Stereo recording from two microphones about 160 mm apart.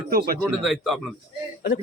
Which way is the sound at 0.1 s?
70° right (ahead or behind).